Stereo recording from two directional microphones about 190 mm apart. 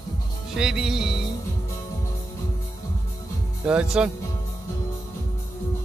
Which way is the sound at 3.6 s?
5° right (ahead or behind).